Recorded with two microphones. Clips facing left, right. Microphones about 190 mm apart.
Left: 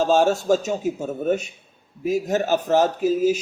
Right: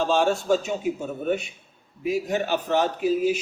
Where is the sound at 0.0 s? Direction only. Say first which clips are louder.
Left 4 dB; 45° left (ahead or behind).